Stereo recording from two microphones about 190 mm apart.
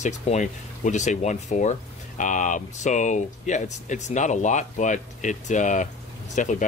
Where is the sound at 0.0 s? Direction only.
40° left (ahead or behind).